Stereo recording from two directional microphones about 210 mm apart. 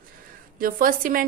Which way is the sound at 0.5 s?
40° right (ahead or behind).